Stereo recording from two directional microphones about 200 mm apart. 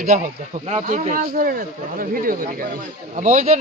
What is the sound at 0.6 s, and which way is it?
Speech, 35° right (ahead or behind).